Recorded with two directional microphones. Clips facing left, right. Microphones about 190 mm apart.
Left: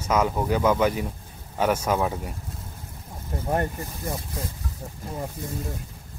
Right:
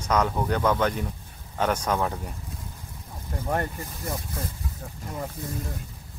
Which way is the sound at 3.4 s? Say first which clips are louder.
Left 2 dB; 20° left (ahead or behind).